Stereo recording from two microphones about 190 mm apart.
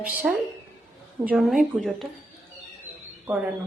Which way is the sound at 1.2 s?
5° right (ahead or behind).